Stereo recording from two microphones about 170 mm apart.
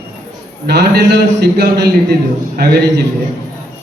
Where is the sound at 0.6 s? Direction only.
90° right.